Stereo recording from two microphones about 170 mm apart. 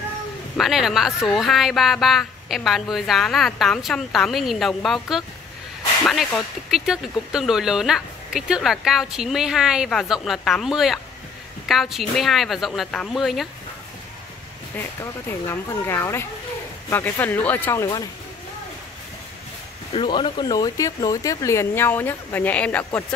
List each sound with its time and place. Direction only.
0.6 s speech: centre (ahead or behind)
6.0 s speech: centre (ahead or behind)
14.8 s speech: 15° left (ahead or behind)
19.9 s speech: 30° left (ahead or behind); by 22.8 s 10° left (ahead or behind)